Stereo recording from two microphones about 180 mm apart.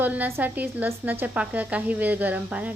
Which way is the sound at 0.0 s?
10° right (ahead or behind).